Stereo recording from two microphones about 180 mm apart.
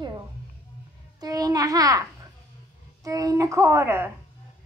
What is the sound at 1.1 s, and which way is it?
A child's voice, 20° right (ahead or behind).